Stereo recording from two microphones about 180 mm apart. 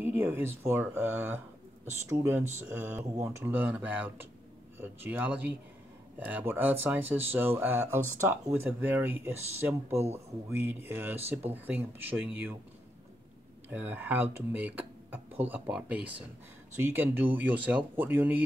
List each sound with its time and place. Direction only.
0.0 s speech: 10° right (ahead or behind)
13.7 s speech: 10° right (ahead or behind)